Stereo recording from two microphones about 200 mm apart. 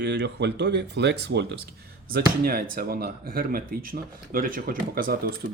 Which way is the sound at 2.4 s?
50° right (ahead or behind).